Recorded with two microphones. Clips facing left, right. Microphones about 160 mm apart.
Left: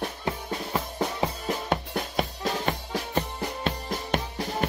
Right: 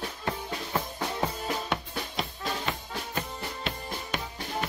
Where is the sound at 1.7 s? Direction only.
40° left (ahead or behind).